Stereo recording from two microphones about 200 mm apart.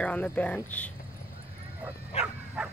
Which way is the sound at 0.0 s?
5° left (ahead or behind).